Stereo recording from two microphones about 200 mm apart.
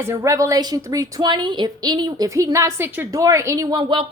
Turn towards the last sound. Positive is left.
turn(degrees=-20)  # may be behind; listen again after turning